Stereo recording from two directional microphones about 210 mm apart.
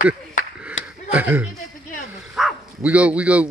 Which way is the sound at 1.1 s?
10° right (ahead or behind).